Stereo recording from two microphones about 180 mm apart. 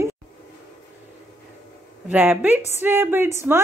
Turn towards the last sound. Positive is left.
turn(degrees=-15)  # may be behind; listen again after turning